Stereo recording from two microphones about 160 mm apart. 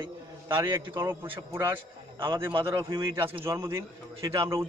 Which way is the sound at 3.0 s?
15° right (ahead or behind).